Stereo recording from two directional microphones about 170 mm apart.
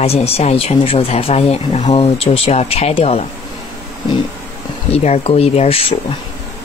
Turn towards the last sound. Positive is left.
turn(degrees=35)  # may be behind; listen again after turning